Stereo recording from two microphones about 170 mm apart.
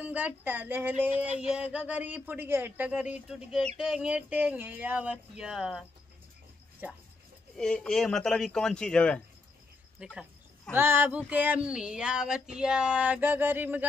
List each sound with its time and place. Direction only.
0.0 s speech: 10° right (ahead or behind)
7.5 s speech: 5° left (ahead or behind)
9.9 s a sound: centre (ahead or behind)
10.7 s speech: 15° right (ahead or behind)